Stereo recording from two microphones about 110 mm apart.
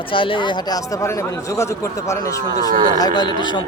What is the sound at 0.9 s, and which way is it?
Speech, 30° left (ahead or behind).